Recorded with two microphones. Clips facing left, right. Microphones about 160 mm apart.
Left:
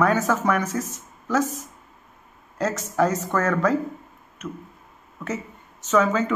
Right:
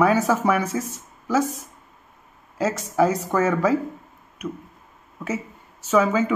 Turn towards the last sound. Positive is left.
turn(degrees=-5)  # may be behind; listen again after turning